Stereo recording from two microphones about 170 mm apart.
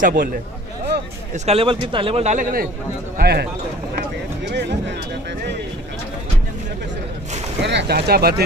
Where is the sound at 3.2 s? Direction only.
70° right (ahead or behind).